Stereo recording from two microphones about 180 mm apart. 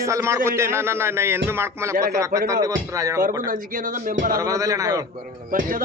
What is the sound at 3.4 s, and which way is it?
Speech, 50° right (ahead or behind).